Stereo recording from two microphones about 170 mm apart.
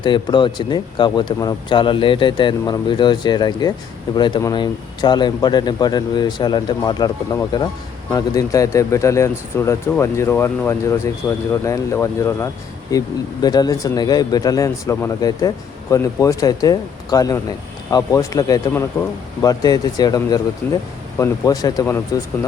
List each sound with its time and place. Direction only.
0.0 s speech: 25° left (ahead or behind)
20.6 s speech: 10° left (ahead or behind)